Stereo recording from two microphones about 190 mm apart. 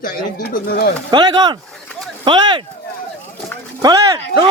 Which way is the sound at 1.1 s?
25° right (ahead or behind).